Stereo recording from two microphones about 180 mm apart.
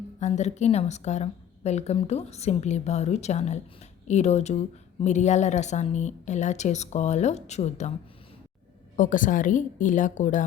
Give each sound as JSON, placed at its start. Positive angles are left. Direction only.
{"t": 0.2, "sound": "a woman's voice", "side_deg": 40}
{"t": 9.0, "sound": "a woman's voice", "side_deg": 45}